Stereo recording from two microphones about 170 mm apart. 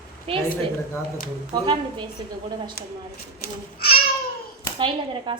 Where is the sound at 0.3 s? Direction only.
30° right (ahead or behind).